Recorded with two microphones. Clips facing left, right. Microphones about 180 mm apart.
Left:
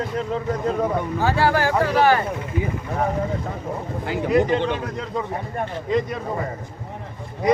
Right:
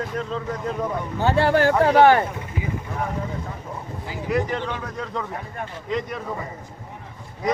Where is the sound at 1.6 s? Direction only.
60° right (ahead or behind).